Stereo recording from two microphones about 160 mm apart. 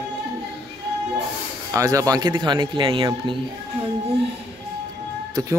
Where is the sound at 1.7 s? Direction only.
20° right (ahead or behind).